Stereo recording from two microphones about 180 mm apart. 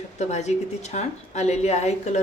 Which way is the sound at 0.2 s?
40° left (ahead or behind).